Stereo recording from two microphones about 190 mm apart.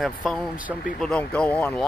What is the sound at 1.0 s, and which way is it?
Speech, 5° left (ahead or behind).